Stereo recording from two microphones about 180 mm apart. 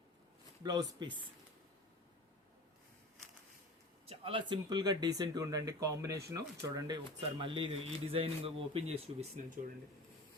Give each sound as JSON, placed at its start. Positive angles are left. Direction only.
{"t": 0.6, "sound": "speech", "side_deg": -20}
{"t": 4.0, "sound": "speech", "side_deg": -30}